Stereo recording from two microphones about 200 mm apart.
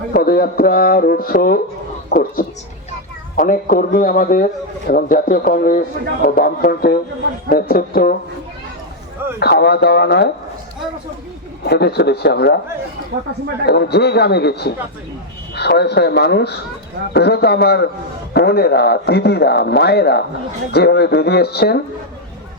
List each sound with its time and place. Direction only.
0.1 s speech: 50° left (ahead or behind)
9.4 s a man's voice: 55° left (ahead or behind)
11.6 s a man's voice: 55° left (ahead or behind)
13.7 s a man's voice: 55° left (ahead or behind)